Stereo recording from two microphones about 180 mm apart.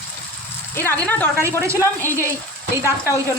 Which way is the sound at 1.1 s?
10° left (ahead or behind).